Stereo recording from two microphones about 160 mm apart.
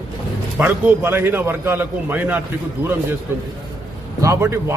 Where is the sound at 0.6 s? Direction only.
10° right (ahead or behind).